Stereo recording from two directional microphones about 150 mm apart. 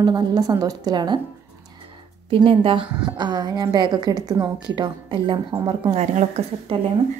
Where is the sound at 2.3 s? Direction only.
35° right (ahead or behind).